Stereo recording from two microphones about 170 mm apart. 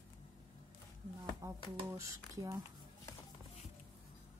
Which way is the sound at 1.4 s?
15° right (ahead or behind).